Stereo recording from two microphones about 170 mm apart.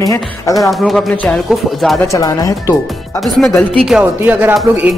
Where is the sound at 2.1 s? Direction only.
20° left (ahead or behind).